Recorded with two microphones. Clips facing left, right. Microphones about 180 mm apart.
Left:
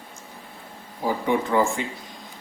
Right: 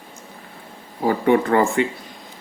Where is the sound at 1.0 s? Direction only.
65° right (ahead or behind).